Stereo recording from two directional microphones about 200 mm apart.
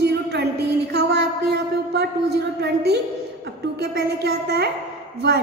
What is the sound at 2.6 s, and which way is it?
A child's voice, 55° right (ahead or behind).